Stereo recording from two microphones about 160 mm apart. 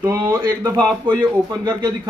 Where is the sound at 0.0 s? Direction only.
20° right (ahead or behind).